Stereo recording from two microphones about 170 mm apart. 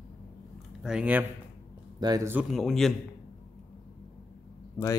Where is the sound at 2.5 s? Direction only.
Centre (ahead or behind).